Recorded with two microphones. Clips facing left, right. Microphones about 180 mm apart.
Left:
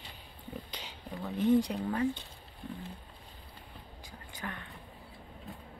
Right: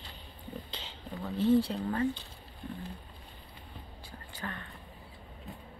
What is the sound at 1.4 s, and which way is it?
Speech, 15° left (ahead or behind).